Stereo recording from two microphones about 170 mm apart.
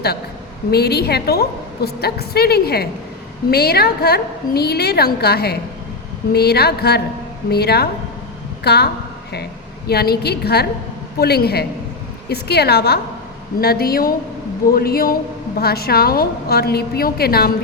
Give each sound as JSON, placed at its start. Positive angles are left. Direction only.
{"t": 0.7, "sound": "a woman's voice", "side_deg": 70}